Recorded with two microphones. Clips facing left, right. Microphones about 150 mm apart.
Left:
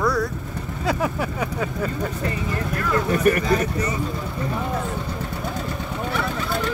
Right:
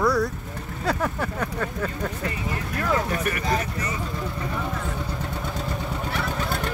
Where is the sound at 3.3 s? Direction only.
45° left (ahead or behind).